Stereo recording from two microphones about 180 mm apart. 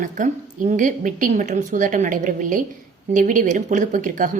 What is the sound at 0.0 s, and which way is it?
A woman's voice, 45° right (ahead or behind).